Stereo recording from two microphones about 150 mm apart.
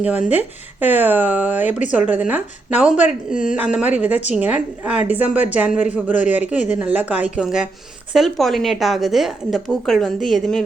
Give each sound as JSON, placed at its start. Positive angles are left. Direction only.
{"t": 0.0, "sound": "speech", "side_deg": -10}